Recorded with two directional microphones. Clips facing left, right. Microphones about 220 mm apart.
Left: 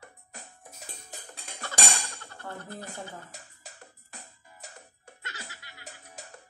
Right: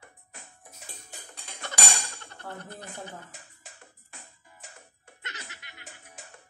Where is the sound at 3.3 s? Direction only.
40° left (ahead or behind).